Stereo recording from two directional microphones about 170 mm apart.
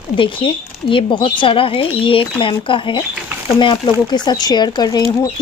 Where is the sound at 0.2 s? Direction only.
30° left (ahead or behind).